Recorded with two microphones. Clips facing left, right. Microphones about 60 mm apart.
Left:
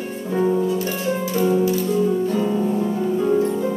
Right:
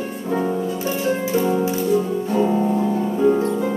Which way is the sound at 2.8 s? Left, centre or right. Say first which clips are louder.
Right 2 dB; centre.